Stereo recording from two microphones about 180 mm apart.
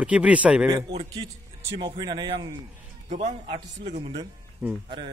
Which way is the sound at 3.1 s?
40° right (ahead or behind).